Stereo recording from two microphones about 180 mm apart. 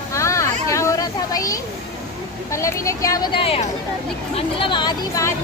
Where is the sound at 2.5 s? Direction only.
15° left (ahead or behind).